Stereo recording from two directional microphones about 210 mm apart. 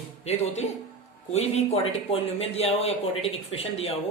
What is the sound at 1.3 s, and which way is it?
Speech, 30° left (ahead or behind).